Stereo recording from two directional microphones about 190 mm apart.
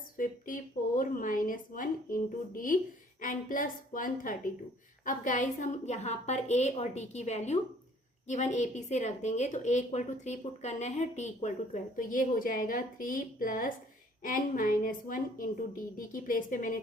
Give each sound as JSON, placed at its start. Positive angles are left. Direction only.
{"t": 0.2, "sound": "a woman's voice", "side_deg": 45}